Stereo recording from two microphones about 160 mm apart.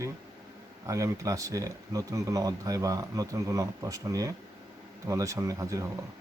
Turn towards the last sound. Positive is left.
turn(degrees=-20)  # may be behind; listen again after turning